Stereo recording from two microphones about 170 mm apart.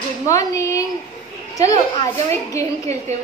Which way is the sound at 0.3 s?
20° left (ahead or behind).